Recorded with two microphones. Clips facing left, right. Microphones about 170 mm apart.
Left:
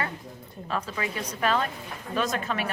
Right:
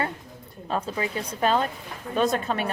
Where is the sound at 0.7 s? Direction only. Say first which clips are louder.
Right 3 dB; 30° right (ahead or behind).